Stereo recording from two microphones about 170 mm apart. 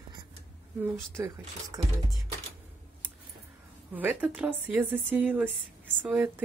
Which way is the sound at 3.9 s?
10° right (ahead or behind).